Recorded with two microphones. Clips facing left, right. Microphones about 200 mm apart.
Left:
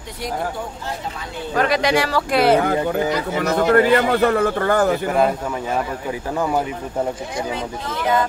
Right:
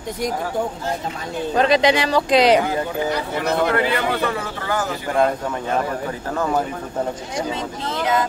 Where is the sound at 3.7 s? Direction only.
45° left (ahead or behind).